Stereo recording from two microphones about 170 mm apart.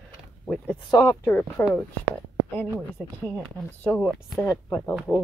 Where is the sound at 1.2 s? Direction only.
10° left (ahead or behind).